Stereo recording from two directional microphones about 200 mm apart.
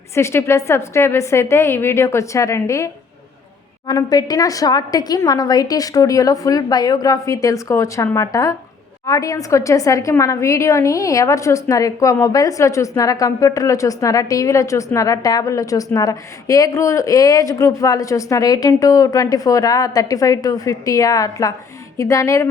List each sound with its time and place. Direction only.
0.1 s a woman's voice: 15° left (ahead or behind)